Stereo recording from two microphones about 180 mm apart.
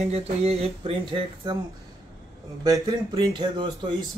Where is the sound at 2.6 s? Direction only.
20° right (ahead or behind).